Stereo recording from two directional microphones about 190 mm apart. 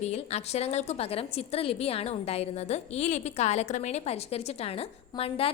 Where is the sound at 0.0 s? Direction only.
35° left (ahead or behind).